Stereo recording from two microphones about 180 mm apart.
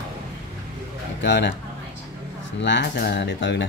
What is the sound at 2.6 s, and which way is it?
Speech, 70° left (ahead or behind).